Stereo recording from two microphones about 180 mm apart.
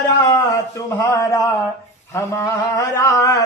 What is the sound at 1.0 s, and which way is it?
Speech, 15° left (ahead or behind).